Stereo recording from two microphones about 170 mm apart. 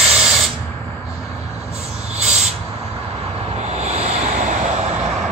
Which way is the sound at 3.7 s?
40° right (ahead or behind).